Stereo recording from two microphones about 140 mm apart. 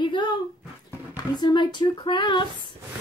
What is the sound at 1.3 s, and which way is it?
Speech, 35° left (ahead or behind).